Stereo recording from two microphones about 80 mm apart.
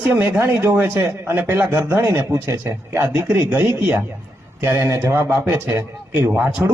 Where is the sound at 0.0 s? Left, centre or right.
Centre.